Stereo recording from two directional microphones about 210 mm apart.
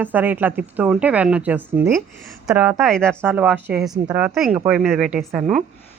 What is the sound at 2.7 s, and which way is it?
Speech, centre (ahead or behind).